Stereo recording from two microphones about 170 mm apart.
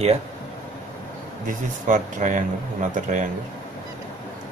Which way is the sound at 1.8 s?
50° right (ahead or behind).